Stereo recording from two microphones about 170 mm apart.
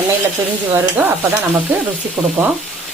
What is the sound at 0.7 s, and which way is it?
Speech, 10° right (ahead or behind).